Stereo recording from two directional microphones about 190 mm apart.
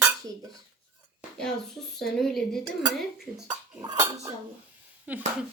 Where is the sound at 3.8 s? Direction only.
15° right (ahead or behind).